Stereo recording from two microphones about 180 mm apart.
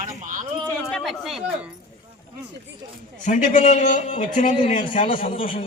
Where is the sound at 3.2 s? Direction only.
45° left (ahead or behind).